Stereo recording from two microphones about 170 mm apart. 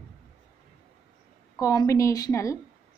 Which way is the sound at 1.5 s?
20° left (ahead or behind).